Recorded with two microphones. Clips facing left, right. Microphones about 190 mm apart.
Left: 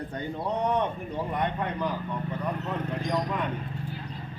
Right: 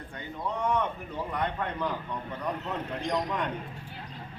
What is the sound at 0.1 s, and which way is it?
Speech, 40° left (ahead or behind).